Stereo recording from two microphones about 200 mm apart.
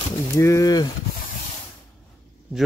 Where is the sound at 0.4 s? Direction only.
15° left (ahead or behind).